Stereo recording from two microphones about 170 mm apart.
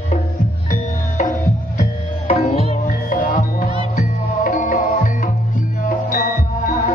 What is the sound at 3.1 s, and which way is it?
Music, 55° left (ahead or behind).